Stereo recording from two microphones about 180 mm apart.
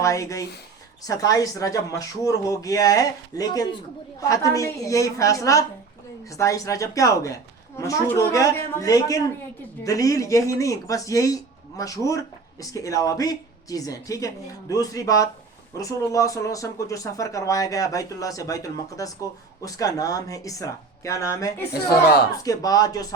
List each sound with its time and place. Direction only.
0.0 s speech: 15° left (ahead or behind)
21.7 s speech: 60° left (ahead or behind)
22.4 s speech: 20° left (ahead or behind)